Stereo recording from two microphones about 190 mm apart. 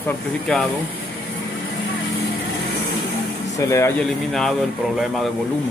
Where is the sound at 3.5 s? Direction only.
15° left (ahead or behind).